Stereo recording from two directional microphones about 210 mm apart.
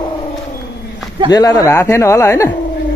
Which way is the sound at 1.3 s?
15° left (ahead or behind).